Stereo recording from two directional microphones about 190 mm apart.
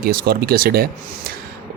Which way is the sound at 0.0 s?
50° right (ahead or behind).